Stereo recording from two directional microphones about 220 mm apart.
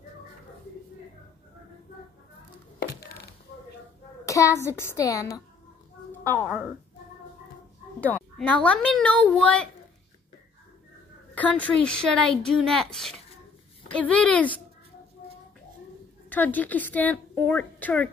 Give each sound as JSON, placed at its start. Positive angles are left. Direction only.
{"t": 2.8, "sound": "a sound", "side_deg": 45}
{"t": 4.3, "sound": "a woman's voice", "side_deg": 15}
{"t": 6.4, "sound": "speech", "side_deg": -5}
{"t": 8.0, "sound": "speech", "side_deg": 5}
{"t": 11.3, "sound": "speech", "side_deg": 5}
{"t": 16.3, "sound": "a woman's voice", "side_deg": 5}